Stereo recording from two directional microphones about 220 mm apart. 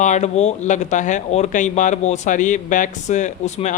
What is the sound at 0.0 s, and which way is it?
Speech, 30° left (ahead or behind).